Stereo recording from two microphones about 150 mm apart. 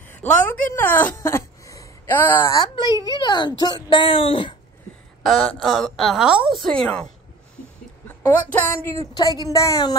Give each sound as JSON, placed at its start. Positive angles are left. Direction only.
{"t": 0.1, "sound": "a woman's voice", "side_deg": 10}
{"t": 1.1, "sound": "a sound", "side_deg": 20}
{"t": 2.5, "sound": "a woman's voice", "side_deg": 30}
{"t": 5.6, "sound": "a woman's voice", "side_deg": 0}
{"t": 8.2, "sound": "a woman's voice", "side_deg": 15}
{"t": 9.1, "sound": "a woman's voice", "side_deg": 25}